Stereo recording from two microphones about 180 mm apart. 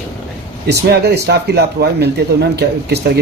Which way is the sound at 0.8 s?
65° right (ahead or behind).